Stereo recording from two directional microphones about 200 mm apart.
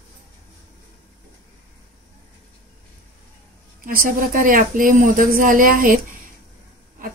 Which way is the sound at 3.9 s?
45° right (ahead or behind).